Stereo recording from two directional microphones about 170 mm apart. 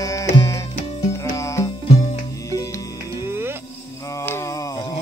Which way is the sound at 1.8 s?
35° left (ahead or behind).